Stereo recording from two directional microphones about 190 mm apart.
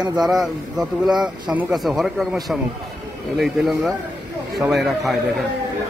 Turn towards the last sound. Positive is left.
turn(degrees=0)  # may be behind; listen again after turning